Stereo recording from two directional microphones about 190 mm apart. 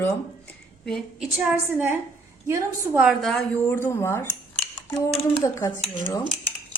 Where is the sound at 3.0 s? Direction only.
Centre (ahead or behind); by 6.2 s 15° left (ahead or behind).